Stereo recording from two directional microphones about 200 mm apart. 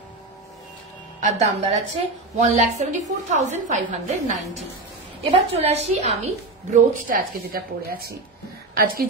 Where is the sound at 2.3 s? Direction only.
35° right (ahead or behind).